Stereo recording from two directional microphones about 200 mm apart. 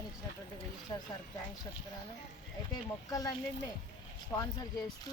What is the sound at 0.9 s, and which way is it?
Speech, 20° left (ahead or behind).